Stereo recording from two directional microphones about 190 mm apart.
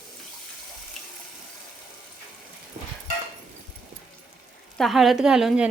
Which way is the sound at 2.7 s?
40° right (ahead or behind).